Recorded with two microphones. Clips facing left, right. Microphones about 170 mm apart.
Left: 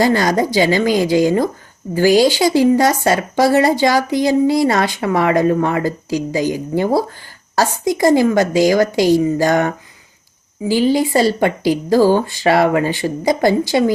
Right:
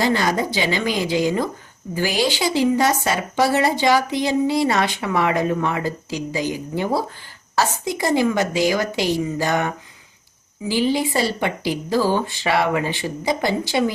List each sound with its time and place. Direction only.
0.0 s speech: 45° left (ahead or behind)